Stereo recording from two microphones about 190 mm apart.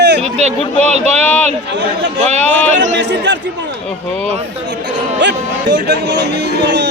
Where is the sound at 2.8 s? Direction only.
70° right (ahead or behind).